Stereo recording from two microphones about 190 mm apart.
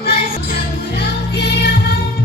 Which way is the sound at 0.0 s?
55° left (ahead or behind).